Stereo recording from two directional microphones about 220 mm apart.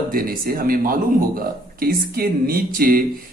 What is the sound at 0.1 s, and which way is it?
Speech, 40° right (ahead or behind).